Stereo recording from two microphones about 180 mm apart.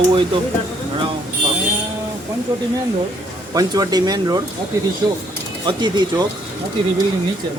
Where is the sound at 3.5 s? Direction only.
20° right (ahead or behind).